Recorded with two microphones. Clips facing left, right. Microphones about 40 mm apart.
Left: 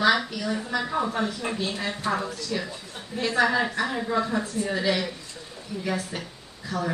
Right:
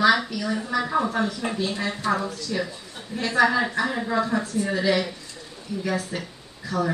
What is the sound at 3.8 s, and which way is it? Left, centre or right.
Speech, centre.